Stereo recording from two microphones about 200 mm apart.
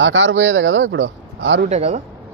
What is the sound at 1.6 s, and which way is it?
Speech, 35° right (ahead or behind).